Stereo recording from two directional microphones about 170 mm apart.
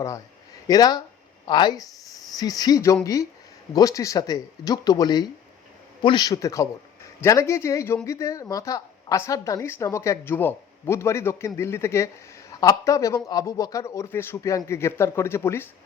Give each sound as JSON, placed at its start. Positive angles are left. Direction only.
{"t": 0.7, "sound": "a woman's voice", "side_deg": 20}